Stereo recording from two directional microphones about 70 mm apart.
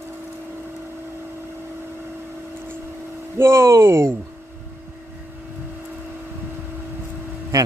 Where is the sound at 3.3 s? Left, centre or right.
Right.